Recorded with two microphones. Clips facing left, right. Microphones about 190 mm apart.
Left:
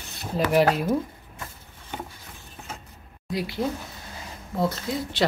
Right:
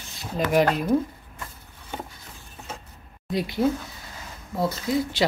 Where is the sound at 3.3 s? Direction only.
25° right (ahead or behind).